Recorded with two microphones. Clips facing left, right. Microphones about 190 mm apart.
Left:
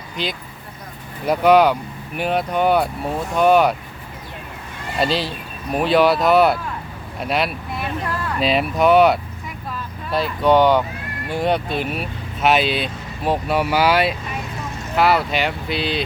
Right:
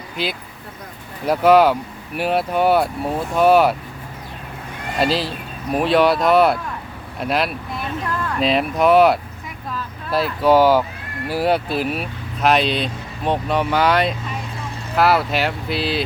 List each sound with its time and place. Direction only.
0.2 s speech: 5° right (ahead or behind)
4.9 s speech: centre (ahead or behind)